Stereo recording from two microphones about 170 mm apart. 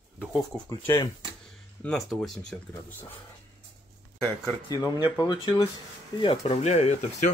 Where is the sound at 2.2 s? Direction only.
5° left (ahead or behind).